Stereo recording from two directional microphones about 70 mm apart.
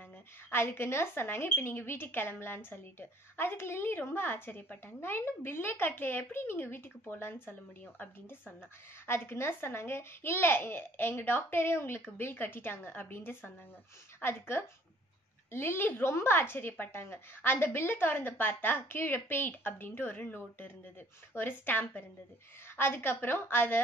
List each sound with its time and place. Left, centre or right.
0.5 s a woman's voice: left